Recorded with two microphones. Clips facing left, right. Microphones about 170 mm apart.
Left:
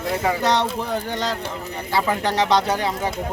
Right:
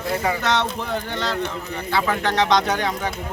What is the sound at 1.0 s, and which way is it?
Speech, 40° left (ahead or behind).